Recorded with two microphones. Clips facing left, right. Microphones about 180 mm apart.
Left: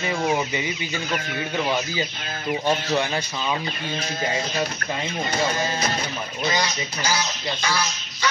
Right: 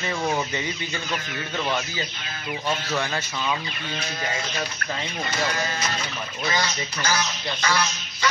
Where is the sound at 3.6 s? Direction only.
35° left (ahead or behind).